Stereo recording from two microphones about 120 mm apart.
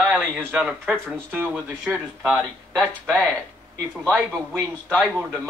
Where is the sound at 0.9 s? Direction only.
10° left (ahead or behind).